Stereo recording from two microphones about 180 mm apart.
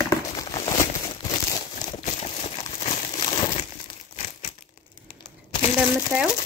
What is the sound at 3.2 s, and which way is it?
Crumpling, 25° left (ahead or behind).